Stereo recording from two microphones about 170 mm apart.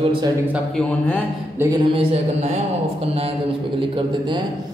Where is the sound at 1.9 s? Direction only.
40° right (ahead or behind).